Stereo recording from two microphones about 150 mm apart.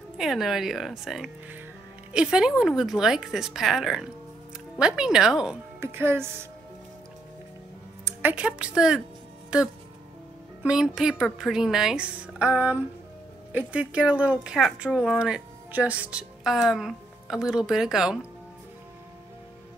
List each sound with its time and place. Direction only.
0.2 s speech: centre (ahead or behind)
5.8 s speech: 15° right (ahead or behind)
8.0 s speech: 10° right (ahead or behind)